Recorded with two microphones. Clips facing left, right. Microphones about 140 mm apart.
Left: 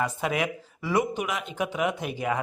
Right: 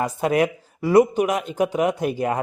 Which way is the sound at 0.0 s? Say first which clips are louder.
Right 7 dB; 40° right (ahead or behind).